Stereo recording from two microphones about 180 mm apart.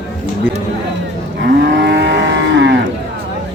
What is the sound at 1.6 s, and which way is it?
Moo, 70° right (ahead or behind).